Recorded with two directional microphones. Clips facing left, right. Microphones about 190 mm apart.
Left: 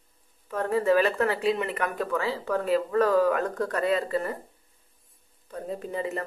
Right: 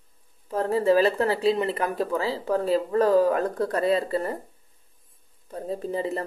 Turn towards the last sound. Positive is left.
turn(degrees=-30)  # may be behind; listen again after turning